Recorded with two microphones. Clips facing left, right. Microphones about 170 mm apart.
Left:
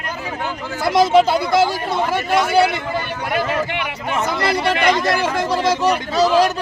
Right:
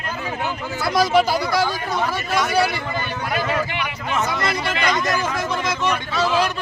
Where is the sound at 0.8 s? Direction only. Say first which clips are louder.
Left 4 dB; 25° left (ahead or behind).